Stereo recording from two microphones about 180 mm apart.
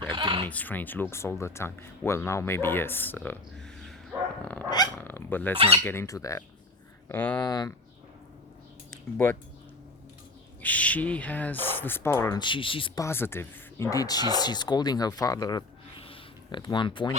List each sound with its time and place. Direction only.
0.0 s a sound: 25° right (ahead or behind)
0.4 s speech: 10° left (ahead or behind)
4.9 s speech: 10° left (ahead or behind)
5.5 s speech: 30° right (ahead or behind)
5.8 s speech: 15° left (ahead or behind)
7.3 s speech: 20° left (ahead or behind)
8.9 s speech: 15° left (ahead or behind)
10.6 s speech: 10° left (ahead or behind); by 13.1 s 30° left (ahead or behind)
13.1 s speech: 10° left (ahead or behind)